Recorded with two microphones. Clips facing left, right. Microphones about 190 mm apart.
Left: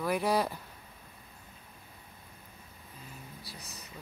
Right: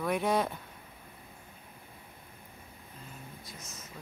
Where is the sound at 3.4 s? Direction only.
35° left (ahead or behind).